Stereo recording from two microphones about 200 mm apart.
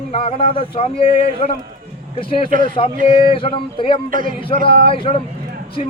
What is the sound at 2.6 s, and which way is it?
Speech, 25° left (ahead or behind).